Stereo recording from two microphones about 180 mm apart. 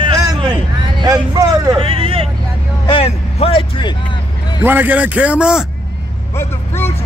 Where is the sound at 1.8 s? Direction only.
30° right (ahead or behind).